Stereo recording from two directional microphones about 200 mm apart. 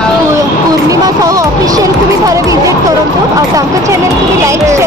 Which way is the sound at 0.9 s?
15° right (ahead or behind).